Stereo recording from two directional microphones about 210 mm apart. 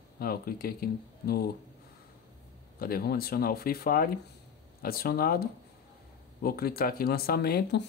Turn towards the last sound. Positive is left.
turn(degrees=50)  # may be behind; listen again after turning